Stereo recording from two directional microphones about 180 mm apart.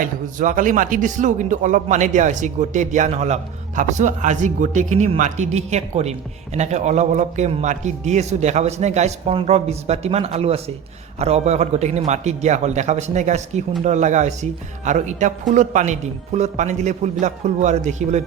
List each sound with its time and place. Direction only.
0.0 s speech: 50° right (ahead or behind)